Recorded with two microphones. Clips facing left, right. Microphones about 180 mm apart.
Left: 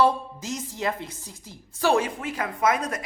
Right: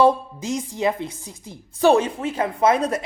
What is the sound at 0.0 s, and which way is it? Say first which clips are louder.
A woman's voice: right 5 dB; 15° right (ahead or behind).